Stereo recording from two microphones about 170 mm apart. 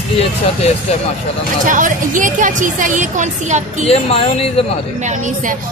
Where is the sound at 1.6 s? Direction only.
50° right (ahead or behind).